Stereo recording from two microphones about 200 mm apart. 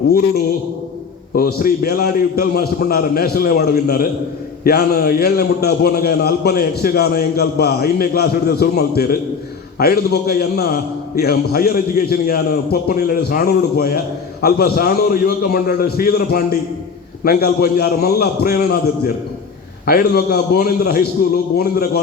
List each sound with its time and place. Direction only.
1.4 s a man's voice: 45° left (ahead or behind)